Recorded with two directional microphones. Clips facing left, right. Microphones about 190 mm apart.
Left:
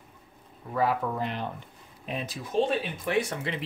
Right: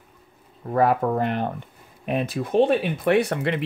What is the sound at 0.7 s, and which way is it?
Speech, 55° right (ahead or behind).